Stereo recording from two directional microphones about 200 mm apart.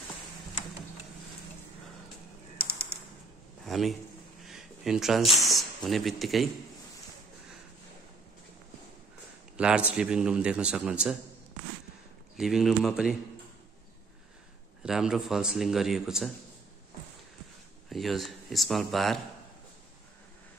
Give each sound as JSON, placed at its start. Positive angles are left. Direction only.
{"t": 2.5, "sound": "typing", "side_deg": 50}
{"t": 3.6, "sound": "a sound", "side_deg": 0}
{"t": 5.3, "sound": "speech", "side_deg": 0}
{"t": 9.6, "sound": "a man's voice", "side_deg": -5}
{"t": 12.4, "sound": "a man's voice", "side_deg": 0}
{"t": 14.8, "sound": "a man's voice", "side_deg": -5}
{"t": 17.8, "sound": "a man's voice", "side_deg": 0}